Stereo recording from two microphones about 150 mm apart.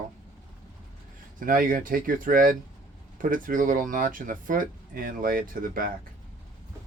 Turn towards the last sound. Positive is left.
turn(degrees=-70)  # may be behind; listen again after turning